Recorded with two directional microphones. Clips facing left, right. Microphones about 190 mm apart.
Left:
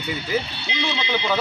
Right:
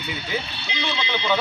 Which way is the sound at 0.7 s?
25° left (ahead or behind).